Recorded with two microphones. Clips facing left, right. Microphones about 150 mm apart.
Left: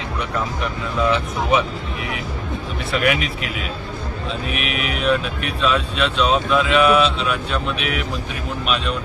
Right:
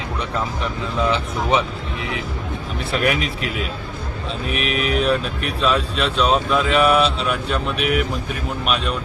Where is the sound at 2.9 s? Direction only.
40° right (ahead or behind).